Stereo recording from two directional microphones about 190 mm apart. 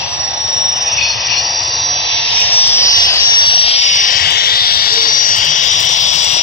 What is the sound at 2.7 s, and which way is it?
Vehicle, 15° left (ahead or behind).